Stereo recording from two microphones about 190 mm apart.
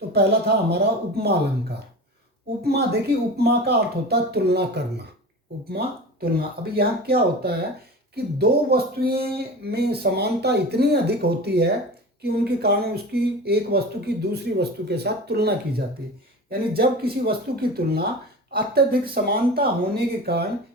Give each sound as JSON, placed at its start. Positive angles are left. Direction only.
{"t": 0.1, "sound": "speech", "side_deg": -60}
{"t": 2.6, "sound": "speech", "side_deg": -60}